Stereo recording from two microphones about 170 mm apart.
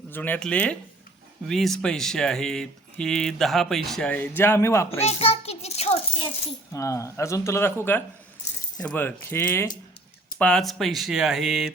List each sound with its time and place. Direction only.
0.1 s speech: 10° left (ahead or behind)
5.0 s a sound: 35° left (ahead or behind)
6.7 s speech: 20° left (ahead or behind); by 11.7 s centre (ahead or behind)